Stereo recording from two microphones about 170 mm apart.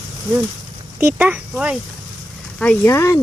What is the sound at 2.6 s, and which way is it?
Speech, 15° left (ahead or behind).